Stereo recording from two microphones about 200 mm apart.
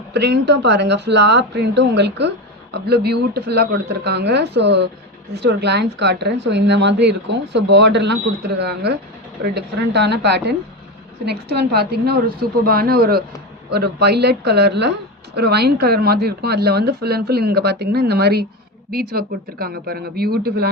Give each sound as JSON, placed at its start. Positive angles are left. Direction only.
{"t": 0.1, "sound": "a woman's voice", "side_deg": -60}